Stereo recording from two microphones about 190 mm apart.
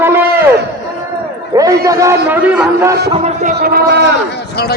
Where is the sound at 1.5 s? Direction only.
15° right (ahead or behind).